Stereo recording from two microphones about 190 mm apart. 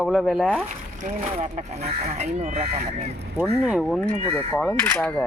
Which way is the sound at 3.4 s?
5° right (ahead or behind).